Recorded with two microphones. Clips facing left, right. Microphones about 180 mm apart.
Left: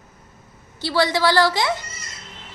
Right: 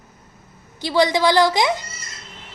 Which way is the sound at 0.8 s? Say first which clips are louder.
Right 2 dB; 15° right (ahead or behind).